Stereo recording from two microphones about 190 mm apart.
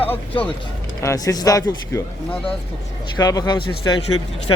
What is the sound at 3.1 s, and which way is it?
Speech, 20° left (ahead or behind).